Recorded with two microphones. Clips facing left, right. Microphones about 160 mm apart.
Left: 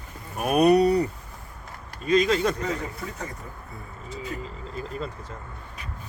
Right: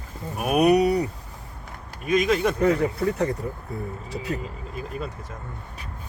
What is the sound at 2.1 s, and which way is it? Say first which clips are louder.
Speech: even; 15° right (ahead or behind).